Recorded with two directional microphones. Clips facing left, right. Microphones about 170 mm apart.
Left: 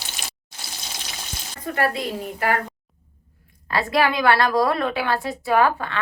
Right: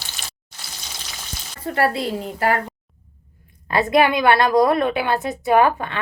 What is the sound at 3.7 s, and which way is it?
Speech, 20° right (ahead or behind).